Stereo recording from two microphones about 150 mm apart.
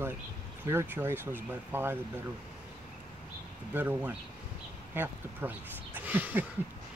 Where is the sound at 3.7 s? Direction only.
10° right (ahead or behind).